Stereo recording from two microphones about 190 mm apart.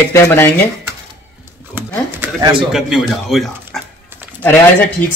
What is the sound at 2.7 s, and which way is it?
Speech, centre (ahead or behind).